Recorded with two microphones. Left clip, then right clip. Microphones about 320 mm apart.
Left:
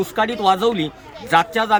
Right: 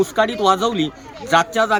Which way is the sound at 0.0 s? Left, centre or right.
Centre.